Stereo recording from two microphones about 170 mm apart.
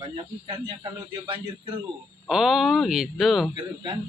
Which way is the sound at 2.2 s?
Centre (ahead or behind).